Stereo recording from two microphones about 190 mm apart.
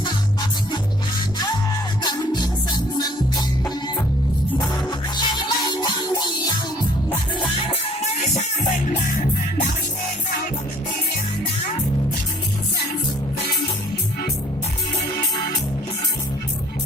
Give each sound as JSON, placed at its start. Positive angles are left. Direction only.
{"t": 2.0, "sound": "music", "side_deg": 20}
{"t": 4.9, "sound": "music", "side_deg": 20}